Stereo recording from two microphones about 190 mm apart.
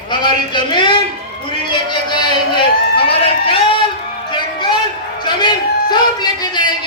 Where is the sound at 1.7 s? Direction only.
25° left (ahead or behind).